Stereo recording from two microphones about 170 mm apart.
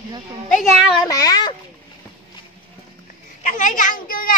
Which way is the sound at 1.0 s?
20° left (ahead or behind).